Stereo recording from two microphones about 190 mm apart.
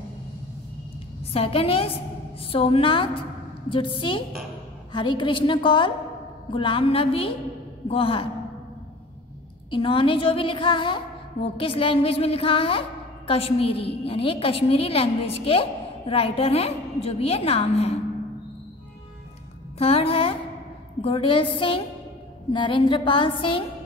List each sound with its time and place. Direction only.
1.3 s a woman's voice: 30° left (ahead or behind)
9.7 s a woman's voice: 25° left (ahead or behind)
19.8 s music: 30° left (ahead or behind)
21.0 s a woman's voice: 25° left (ahead or behind)